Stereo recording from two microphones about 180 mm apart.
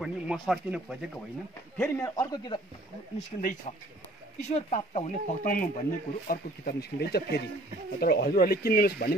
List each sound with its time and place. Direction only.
0.0 s speech: 5° right (ahead or behind)
1.8 s a man's voice: 20° left (ahead or behind)
3.3 s speech: 35° left (ahead or behind); by 9.1 s 60° left (ahead or behind)